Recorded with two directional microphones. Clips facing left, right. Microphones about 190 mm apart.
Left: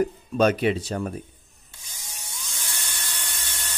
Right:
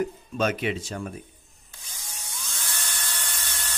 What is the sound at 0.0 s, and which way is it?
Speech, 35° left (ahead or behind).